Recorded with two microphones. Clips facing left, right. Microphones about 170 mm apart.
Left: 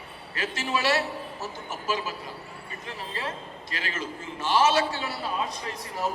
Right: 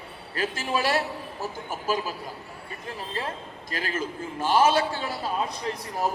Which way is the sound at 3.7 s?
45° right (ahead or behind).